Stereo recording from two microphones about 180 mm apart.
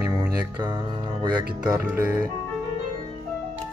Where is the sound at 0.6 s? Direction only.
20° right (ahead or behind).